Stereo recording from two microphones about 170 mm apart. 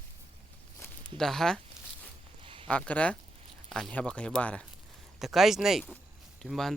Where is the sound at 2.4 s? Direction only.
30° right (ahead or behind).